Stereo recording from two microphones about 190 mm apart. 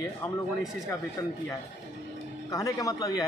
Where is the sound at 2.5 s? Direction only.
20° left (ahead or behind).